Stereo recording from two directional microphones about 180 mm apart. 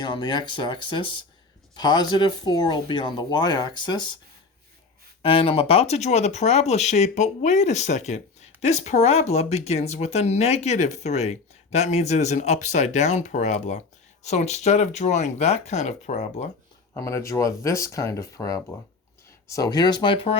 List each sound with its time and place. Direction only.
0.0 s speech: 25° left (ahead or behind)
5.2 s speech: 30° left (ahead or behind)
16.9 s speech: 15° left (ahead or behind)